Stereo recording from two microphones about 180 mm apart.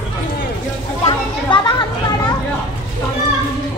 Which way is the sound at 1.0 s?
25° left (ahead or behind).